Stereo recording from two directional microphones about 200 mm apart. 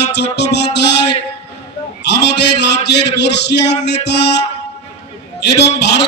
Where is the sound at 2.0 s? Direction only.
60° left (ahead or behind).